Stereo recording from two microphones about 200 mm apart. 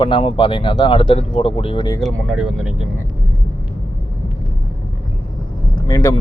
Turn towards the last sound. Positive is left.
turn(degrees=20)  # may be behind; listen again after turning